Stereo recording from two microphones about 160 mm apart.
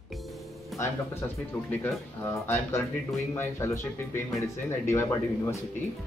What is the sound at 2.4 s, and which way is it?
Speech, 15° left (ahead or behind).